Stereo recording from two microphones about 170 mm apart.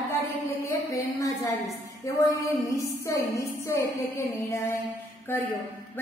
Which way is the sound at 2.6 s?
20° left (ahead or behind).